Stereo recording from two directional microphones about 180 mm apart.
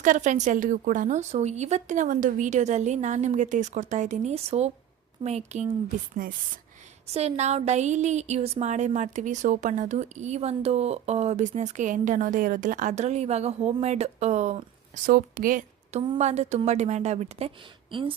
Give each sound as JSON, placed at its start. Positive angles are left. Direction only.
{"t": 0.0, "sound": "speech", "side_deg": -45}
{"t": 7.1, "sound": "speech", "side_deg": -35}
{"t": 15.0, "sound": "speech", "side_deg": -50}